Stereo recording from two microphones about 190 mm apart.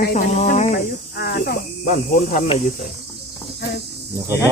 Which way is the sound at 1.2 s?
55° left (ahead or behind).